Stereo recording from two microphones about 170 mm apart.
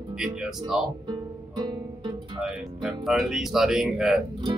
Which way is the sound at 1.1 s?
25° right (ahead or behind).